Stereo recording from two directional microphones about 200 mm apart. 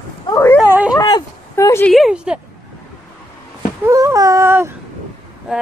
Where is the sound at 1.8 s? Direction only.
Centre (ahead or behind).